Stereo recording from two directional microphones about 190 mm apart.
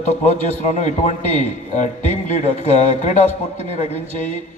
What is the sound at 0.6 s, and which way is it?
A man's voice, 35° left (ahead or behind).